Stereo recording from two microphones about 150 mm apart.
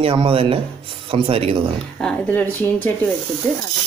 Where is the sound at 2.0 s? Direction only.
10° left (ahead or behind).